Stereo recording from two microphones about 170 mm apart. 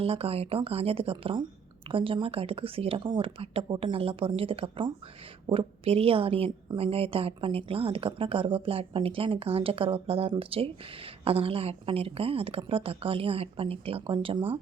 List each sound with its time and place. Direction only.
0.0 s a woman's voice: 35° right (ahead or behind)